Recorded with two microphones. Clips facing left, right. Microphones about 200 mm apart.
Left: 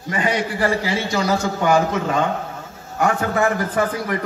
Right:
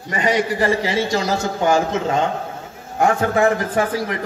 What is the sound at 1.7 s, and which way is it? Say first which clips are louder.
A man's voice: even; 25° right (ahead or behind).